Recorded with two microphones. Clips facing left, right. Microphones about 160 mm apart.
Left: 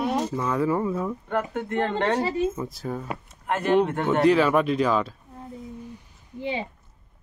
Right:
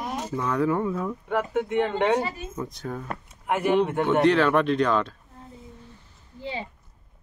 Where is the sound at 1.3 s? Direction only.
5° right (ahead or behind).